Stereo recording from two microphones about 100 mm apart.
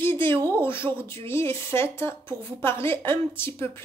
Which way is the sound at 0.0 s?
25° left (ahead or behind).